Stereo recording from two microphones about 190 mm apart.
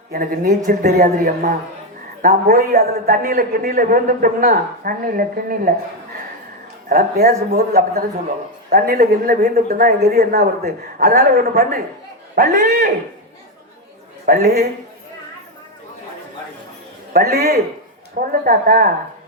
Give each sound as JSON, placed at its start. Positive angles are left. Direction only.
{"t": 0.1, "sound": "a man's voice", "side_deg": -50}
{"t": 6.8, "sound": "a man's voice", "side_deg": -55}
{"t": 14.3, "sound": "a man's voice", "side_deg": -55}
{"t": 17.2, "sound": "a man's voice", "side_deg": -55}